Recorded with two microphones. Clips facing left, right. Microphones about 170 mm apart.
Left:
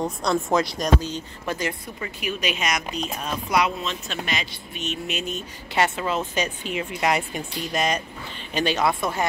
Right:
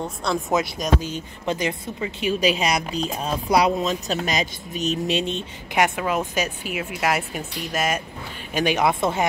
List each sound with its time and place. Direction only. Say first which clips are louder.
0.0 s speech: left 2 dB; 5° right (ahead or behind)
1.1 s speech: right 3 dB; 20° right (ahead or behind)
5.7 s speech: right 2 dB; 10° right (ahead or behind)
8.5 s speech: right 2 dB; 15° right (ahead or behind)